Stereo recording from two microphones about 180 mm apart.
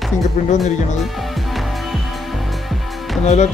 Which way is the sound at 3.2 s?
40° left (ahead or behind).